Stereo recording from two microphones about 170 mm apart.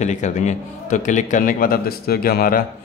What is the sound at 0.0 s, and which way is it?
A man's voice, 45° left (ahead or behind).